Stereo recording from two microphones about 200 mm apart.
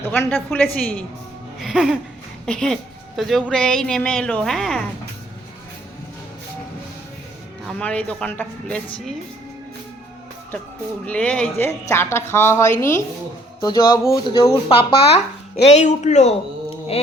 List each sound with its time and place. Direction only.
0.0 s a woman's voice: 10° left (ahead or behind)
1.5 s music: centre (ahead or behind)
2.5 s speech: 5° left (ahead or behind)
7.7 s speech: 5° left (ahead or behind)
11.0 s a woman's voice: 5° left (ahead or behind)
14.4 s speech: 30° left (ahead or behind)